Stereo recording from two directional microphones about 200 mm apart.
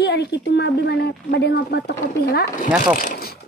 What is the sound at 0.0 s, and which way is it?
Speech, 55° left (ahead or behind).